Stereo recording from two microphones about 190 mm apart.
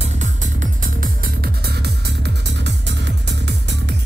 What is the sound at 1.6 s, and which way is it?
Music, 60° right (ahead or behind).